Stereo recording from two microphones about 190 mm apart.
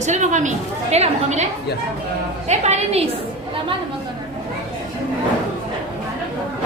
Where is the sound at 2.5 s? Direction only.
35° right (ahead or behind).